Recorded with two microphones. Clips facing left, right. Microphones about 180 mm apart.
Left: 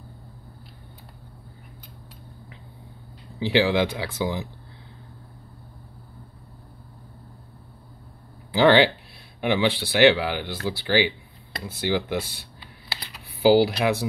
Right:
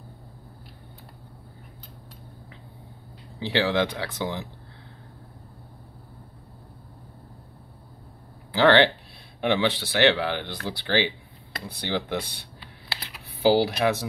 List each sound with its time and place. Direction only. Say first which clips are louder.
3.3 s speech: left 3 dB; 10° left (ahead or behind)
8.5 s speech: left 1 dB; 15° left (ahead or behind)
12.9 s computer keyboard: even; 5° right (ahead or behind)
13.4 s speech: left 3 dB; 10° left (ahead or behind)